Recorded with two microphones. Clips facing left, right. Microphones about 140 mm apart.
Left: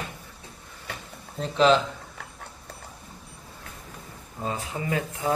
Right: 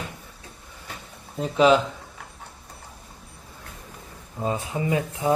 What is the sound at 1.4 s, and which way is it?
Speech, 10° right (ahead or behind).